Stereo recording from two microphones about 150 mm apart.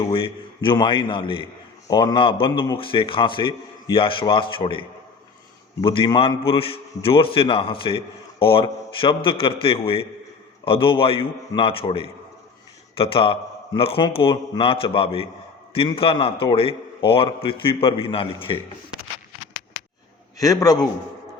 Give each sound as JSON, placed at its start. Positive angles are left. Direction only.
{"t": 0.1, "sound": "a man's voice", "side_deg": 35}
{"t": 20.4, "sound": "a man's voice", "side_deg": 25}